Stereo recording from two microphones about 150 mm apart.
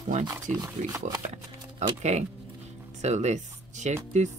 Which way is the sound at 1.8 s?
50° right (ahead or behind).